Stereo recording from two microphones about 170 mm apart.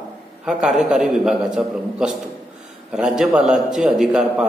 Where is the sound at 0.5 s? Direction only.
5° right (ahead or behind).